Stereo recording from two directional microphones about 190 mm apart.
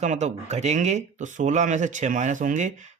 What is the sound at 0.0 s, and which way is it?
Speech, 40° right (ahead or behind).